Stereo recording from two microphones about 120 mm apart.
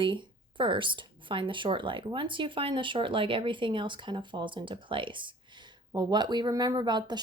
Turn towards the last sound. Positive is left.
turn(degrees=-40)  # may be behind; listen again after turning